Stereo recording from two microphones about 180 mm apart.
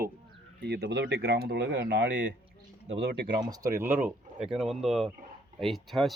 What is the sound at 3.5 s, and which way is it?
Speech, 20° right (ahead or behind).